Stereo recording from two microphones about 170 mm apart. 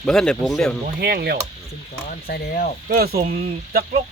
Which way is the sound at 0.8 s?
65° right (ahead or behind).